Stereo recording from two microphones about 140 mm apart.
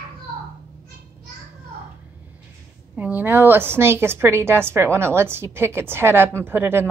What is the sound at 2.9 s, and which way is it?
A woman's voice, 10° right (ahead or behind).